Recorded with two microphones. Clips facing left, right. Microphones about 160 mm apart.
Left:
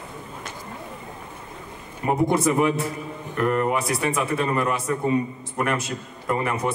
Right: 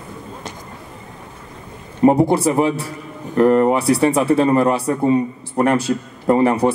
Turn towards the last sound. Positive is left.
turn(degrees=-30)  # may be behind; listen again after turning